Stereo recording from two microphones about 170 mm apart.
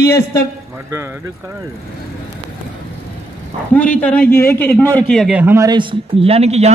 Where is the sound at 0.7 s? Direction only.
15° right (ahead or behind).